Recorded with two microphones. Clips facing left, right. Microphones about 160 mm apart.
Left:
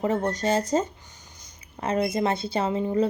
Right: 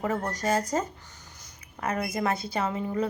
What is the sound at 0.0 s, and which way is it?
A woman's voice, 25° left (ahead or behind).